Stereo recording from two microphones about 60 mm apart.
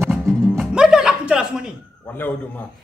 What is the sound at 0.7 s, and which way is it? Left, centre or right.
Music, centre.